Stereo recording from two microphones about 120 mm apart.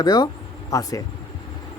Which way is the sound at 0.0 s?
35° left (ahead or behind).